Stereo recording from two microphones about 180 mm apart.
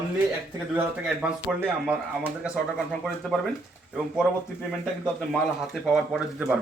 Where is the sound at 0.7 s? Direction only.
5° right (ahead or behind).